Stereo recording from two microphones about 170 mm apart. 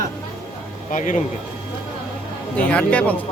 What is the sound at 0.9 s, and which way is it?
Speech, 50° left (ahead or behind).